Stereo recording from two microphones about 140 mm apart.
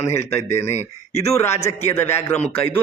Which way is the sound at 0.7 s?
50° left (ahead or behind).